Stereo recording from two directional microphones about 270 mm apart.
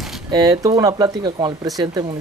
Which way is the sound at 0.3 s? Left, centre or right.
Centre.